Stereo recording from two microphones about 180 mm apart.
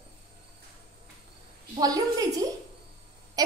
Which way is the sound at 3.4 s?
20° right (ahead or behind).